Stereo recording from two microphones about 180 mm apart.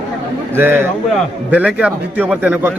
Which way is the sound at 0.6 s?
10° right (ahead or behind).